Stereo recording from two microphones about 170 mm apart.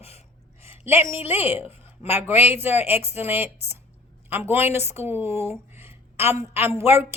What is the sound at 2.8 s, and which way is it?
Speech, 35° left (ahead or behind).